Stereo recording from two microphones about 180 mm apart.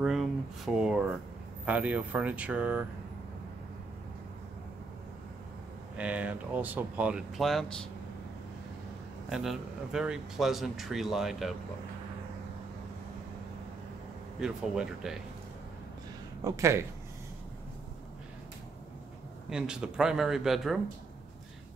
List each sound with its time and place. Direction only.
0.0 s a sound: centre (ahead or behind)
0.7 s speech: 5° right (ahead or behind)
5.9 s speech: 10° right (ahead or behind)
9.3 s speech: centre (ahead or behind)
14.4 s speech: 5° right (ahead or behind)
16.4 s speech: 15° right (ahead or behind)
19.5 s speech: 5° right (ahead or behind)